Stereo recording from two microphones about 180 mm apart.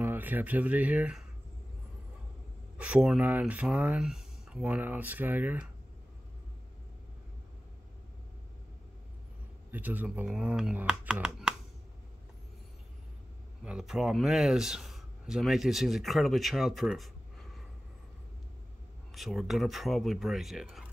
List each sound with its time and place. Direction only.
0.0 s speech: 10° right (ahead or behind)
2.8 s speech: 5° right (ahead or behind)
9.7 s speech: 10° right (ahead or behind)
13.7 s speech: 5° right (ahead or behind)
19.1 s speech: centre (ahead or behind)